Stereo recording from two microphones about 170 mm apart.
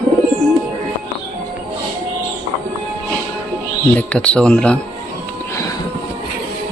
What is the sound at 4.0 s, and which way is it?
Speech, 5° left (ahead or behind).